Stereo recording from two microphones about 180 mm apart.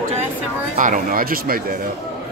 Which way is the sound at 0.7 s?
45° right (ahead or behind).